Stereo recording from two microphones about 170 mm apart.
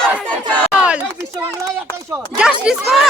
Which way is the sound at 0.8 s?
5° right (ahead or behind).